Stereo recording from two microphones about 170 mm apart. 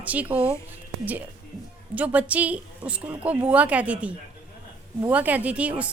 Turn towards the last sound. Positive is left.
turn(degrees=-10)  # may be behind; listen again after turning